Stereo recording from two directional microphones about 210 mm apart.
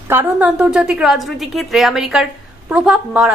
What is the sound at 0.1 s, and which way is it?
A woman's voice, 10° right (ahead or behind).